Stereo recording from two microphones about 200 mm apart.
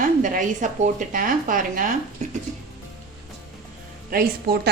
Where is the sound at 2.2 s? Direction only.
35° right (ahead or behind).